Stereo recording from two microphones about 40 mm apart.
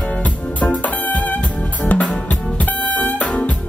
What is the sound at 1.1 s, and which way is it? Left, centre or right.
Music, left.